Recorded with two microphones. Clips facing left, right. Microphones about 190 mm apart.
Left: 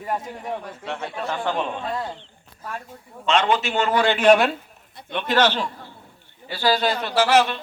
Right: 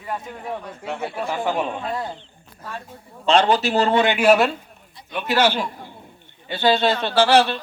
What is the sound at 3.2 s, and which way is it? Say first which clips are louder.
Speech: right 3 dB; 35° right (ahead or behind).